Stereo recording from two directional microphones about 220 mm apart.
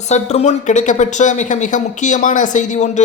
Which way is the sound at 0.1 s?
30° left (ahead or behind).